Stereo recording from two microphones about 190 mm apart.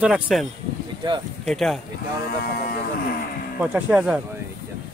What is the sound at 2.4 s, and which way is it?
Speech, 55° left (ahead or behind).